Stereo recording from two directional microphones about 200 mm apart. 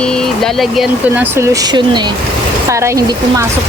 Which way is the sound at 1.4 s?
15° right (ahead or behind).